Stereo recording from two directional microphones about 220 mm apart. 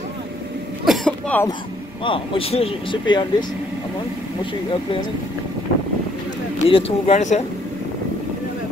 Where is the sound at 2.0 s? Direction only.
25° left (ahead or behind).